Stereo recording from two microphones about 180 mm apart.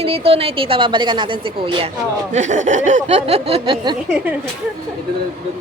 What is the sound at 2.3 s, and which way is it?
A woman's voice, 40° right (ahead or behind).